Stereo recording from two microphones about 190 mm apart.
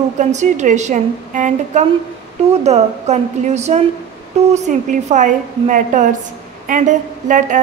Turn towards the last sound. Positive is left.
turn(degrees=-40)  # may be behind; listen again after turning